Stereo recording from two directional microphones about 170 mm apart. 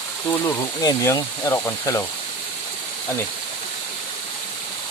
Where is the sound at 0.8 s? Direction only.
20° left (ahead or behind).